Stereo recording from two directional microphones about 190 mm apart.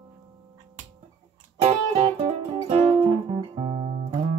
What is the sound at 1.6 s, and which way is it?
Music, 30° right (ahead or behind).